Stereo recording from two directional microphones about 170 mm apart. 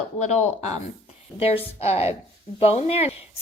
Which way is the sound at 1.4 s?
35° left (ahead or behind).